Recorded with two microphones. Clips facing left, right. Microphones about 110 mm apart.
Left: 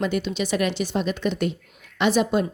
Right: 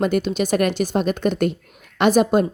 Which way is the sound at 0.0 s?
45° right (ahead or behind).